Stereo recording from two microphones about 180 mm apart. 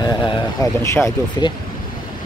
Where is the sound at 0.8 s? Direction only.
15° left (ahead or behind).